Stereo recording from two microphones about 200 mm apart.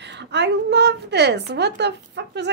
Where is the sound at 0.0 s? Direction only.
60° right (ahead or behind).